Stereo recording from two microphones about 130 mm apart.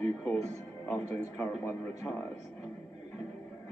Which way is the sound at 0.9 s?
15° left (ahead or behind).